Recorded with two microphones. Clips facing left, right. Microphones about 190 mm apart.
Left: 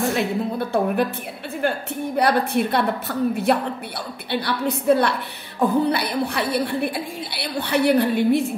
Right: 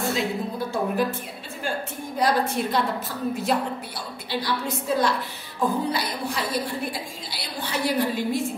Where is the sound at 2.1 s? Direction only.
65° left (ahead or behind).